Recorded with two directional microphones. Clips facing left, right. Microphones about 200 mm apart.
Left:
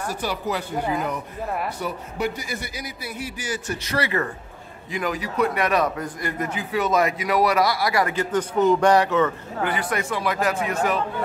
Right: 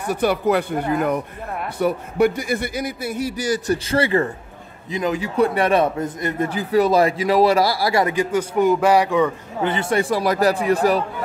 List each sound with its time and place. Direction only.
0.1 s a man's voice: 55° right (ahead or behind); by 6.5 s 25° right (ahead or behind)
6.5 s speech: 35° right (ahead or behind)
8.1 s speech: 10° right (ahead or behind)
9.6 s speech: 25° right (ahead or behind)